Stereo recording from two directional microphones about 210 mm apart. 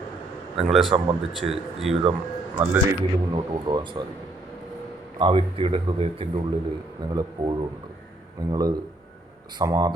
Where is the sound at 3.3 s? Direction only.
25° right (ahead or behind).